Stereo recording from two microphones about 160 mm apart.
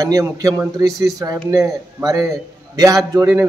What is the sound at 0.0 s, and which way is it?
A man's voice, 20° right (ahead or behind).